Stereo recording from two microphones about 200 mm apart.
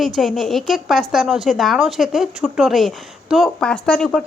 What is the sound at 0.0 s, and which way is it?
A woman's voice, centre (ahead or behind).